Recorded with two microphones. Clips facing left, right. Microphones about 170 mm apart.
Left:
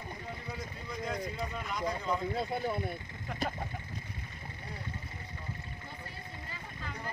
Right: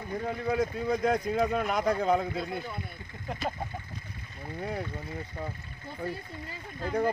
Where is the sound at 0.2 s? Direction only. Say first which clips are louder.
Right 18 dB; 90° right.